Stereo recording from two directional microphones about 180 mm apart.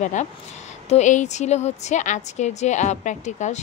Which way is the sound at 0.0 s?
40° left (ahead or behind).